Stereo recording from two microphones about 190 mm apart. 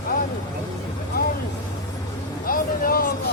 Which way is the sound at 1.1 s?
55° left (ahead or behind).